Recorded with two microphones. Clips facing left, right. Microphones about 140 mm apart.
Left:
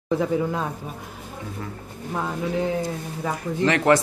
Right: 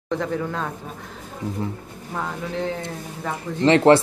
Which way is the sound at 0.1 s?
10° left (ahead or behind).